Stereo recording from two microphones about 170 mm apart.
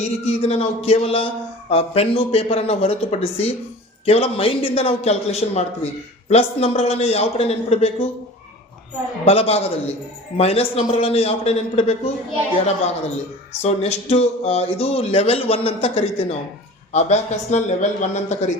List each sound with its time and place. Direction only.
0.0 s a man's voice: 40° left (ahead or behind)
9.2 s a man's voice: 35° left (ahead or behind)
13.5 s a man's voice: 40° left (ahead or behind)